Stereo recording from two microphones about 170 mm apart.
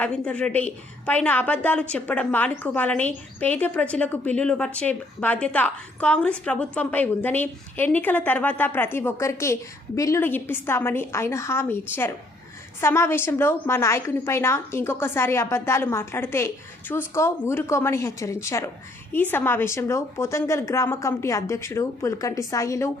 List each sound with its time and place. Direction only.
0.0 s speech: 5° left (ahead or behind)